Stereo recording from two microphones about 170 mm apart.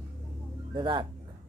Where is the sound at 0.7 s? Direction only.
25° right (ahead or behind).